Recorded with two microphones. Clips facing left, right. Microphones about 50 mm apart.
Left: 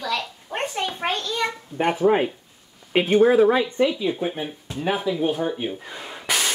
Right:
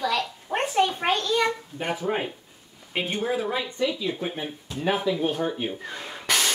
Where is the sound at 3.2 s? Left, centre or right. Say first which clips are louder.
Left 11 dB; left.